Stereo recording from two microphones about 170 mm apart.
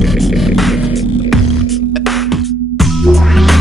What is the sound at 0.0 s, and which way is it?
Music, centre (ahead or behind).